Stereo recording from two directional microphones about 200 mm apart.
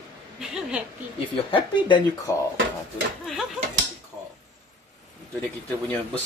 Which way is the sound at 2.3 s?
15° left (ahead or behind).